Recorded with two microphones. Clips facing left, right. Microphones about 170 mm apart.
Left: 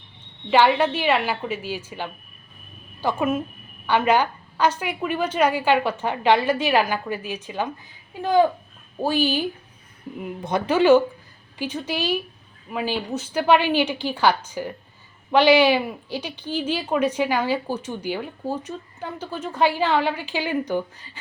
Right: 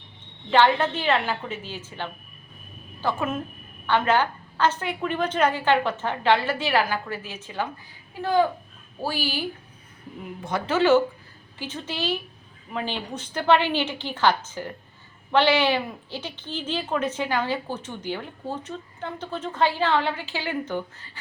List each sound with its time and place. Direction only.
0.5 s a woman's voice: 10° left (ahead or behind)